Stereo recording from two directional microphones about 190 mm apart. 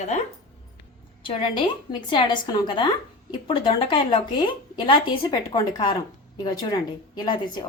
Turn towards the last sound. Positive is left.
turn(degrees=20)  # may be behind; listen again after turning